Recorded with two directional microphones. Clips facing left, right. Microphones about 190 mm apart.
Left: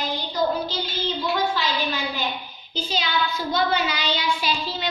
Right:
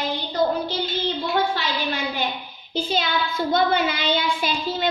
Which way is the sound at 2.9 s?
55° right (ahead or behind).